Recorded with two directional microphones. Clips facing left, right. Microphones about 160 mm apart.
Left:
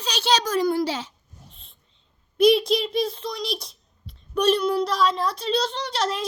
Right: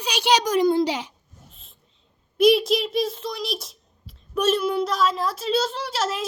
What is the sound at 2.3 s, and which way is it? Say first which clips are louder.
A child's voice: even; centre (ahead or behind).